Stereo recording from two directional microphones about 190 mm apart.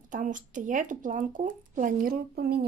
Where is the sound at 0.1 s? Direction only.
45° right (ahead or behind).